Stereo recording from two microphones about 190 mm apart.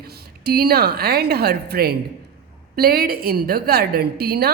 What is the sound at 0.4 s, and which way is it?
A woman's voice, 55° right (ahead or behind).